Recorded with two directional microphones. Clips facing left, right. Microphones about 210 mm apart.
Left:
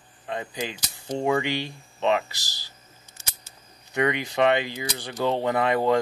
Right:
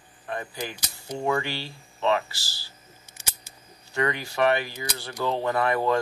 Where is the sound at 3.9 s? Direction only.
20° left (ahead or behind).